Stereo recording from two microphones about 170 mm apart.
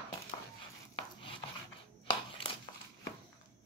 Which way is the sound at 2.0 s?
25° left (ahead or behind).